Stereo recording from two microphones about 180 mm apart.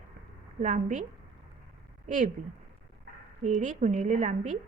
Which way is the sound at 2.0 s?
45° right (ahead or behind).